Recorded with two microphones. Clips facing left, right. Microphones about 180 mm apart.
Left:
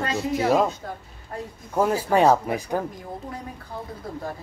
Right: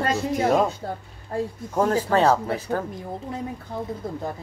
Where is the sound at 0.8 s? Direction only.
35° right (ahead or behind).